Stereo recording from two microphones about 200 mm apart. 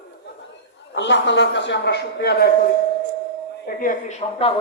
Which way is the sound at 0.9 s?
65° left (ahead or behind).